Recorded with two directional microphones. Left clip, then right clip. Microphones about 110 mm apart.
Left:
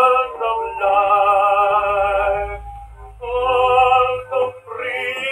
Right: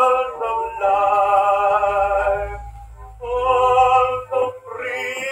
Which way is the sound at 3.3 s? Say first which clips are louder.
Left 1 dB; 15° left (ahead or behind).